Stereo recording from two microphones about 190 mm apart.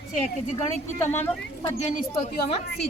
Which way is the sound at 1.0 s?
10° left (ahead or behind).